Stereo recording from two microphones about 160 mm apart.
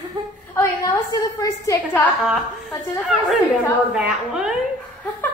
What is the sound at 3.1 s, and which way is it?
A woman's voice, centre (ahead or behind).